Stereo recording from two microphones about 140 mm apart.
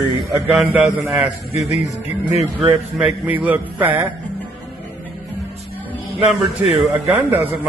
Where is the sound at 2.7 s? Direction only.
10° right (ahead or behind).